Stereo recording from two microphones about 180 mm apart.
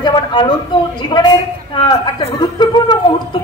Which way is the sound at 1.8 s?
25° left (ahead or behind).